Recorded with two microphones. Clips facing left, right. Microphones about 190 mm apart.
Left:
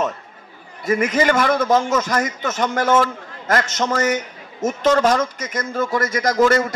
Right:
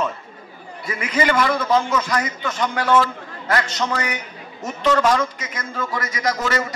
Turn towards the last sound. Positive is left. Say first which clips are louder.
# left 7 dB
turn(degrees=50)  # may be behind; listen again after turning